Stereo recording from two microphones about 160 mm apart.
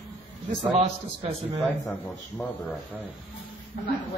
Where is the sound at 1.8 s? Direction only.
5° left (ahead or behind).